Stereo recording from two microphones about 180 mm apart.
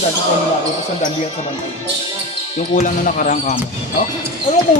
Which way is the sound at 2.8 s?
45° left (ahead or behind).